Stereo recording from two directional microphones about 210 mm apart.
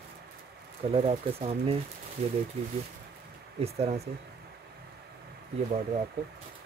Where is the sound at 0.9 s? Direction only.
30° right (ahead or behind).